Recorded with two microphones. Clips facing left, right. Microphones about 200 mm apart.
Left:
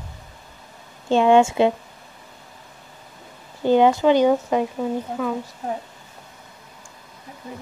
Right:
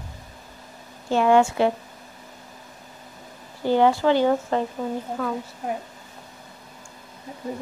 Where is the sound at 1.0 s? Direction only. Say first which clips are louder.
Left 3 dB; 20° left (ahead or behind).